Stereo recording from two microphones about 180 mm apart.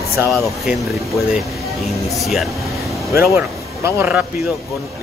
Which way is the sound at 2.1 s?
Centre (ahead or behind).